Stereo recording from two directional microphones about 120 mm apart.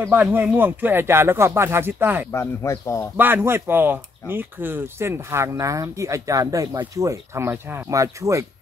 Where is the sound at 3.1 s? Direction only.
15° right (ahead or behind).